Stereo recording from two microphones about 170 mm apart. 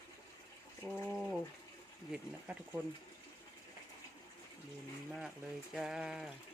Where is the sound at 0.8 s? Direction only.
15° left (ahead or behind).